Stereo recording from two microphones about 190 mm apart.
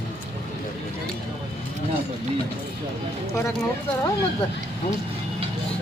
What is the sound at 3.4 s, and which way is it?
Speech, 15° left (ahead or behind).